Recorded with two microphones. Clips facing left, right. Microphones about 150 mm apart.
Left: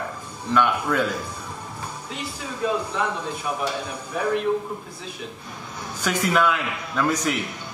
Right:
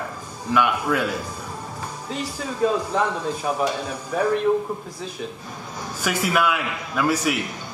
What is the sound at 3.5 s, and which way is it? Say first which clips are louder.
Speech: right 4 dB; 35° right (ahead or behind).